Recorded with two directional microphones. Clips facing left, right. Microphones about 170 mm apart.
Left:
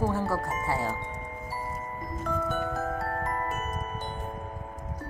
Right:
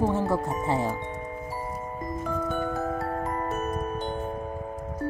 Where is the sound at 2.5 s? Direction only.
Centre (ahead or behind).